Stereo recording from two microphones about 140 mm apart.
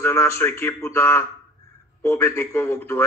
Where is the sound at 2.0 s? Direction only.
20° left (ahead or behind).